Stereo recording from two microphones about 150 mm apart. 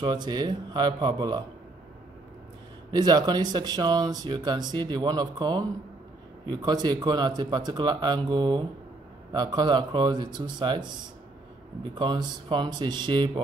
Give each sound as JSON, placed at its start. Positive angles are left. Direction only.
{"t": 0.0, "sound": "speech", "side_deg": -30}
{"t": 2.9, "sound": "speech", "side_deg": -25}
{"t": 11.9, "sound": "speech", "side_deg": -30}